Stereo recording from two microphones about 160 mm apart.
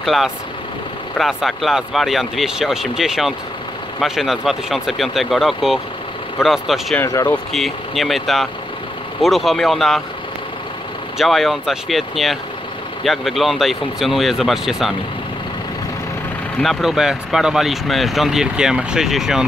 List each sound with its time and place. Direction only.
0.0 s speech: centre (ahead or behind)
7.0 s speech: 15° left (ahead or behind)
7.5 s speech: centre (ahead or behind)
11.1 s speech: centre (ahead or behind)
16.5 s speech: centre (ahead or behind)